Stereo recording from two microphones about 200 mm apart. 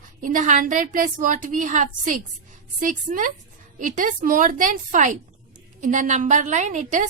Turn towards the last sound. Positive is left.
turn(degrees=-35)  # may be behind; listen again after turning